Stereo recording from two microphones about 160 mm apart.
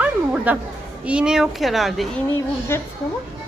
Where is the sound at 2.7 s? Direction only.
15° left (ahead or behind).